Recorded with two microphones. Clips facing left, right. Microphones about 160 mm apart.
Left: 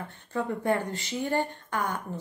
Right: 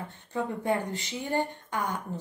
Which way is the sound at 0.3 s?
15° right (ahead or behind).